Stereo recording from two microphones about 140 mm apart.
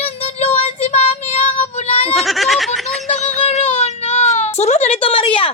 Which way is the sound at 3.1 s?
50° left (ahead or behind).